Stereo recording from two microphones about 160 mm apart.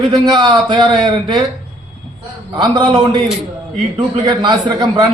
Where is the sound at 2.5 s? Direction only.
25° right (ahead or behind).